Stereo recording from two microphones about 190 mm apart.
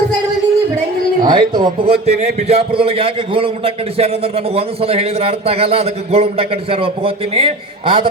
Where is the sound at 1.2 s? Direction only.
25° right (ahead or behind).